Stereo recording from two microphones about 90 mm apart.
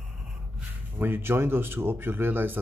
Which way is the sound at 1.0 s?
25° right (ahead or behind).